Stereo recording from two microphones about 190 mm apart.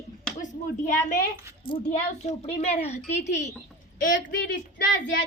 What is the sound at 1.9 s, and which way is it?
A woman's voice, 40° left (ahead or behind).